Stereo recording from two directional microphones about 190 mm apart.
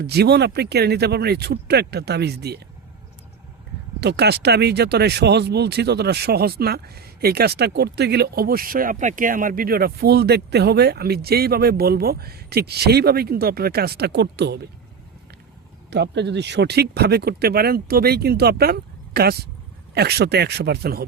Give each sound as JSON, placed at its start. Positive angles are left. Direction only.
{"t": 0.0, "sound": "speech", "side_deg": -60}
{"t": 4.0, "sound": "speech", "side_deg": -60}
{"t": 15.9, "sound": "speech", "side_deg": -65}